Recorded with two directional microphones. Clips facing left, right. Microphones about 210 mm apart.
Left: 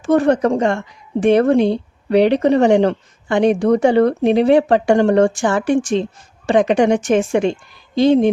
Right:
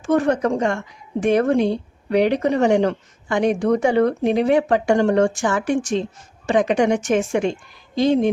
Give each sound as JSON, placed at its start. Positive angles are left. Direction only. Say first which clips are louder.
{"t": 0.0, "sound": "speech", "louder": "left 4 dB", "side_deg": 30}